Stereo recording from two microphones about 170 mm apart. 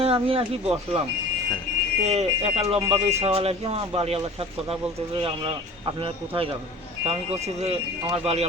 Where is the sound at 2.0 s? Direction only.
40° right (ahead or behind).